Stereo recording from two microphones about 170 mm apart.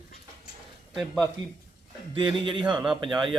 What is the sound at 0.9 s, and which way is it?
Speech, 5° left (ahead or behind).